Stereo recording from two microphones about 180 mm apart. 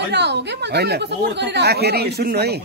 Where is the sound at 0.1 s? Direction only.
70° right (ahead or behind).